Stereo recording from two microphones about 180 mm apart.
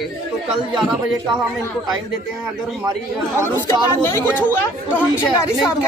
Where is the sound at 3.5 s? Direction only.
15° left (ahead or behind).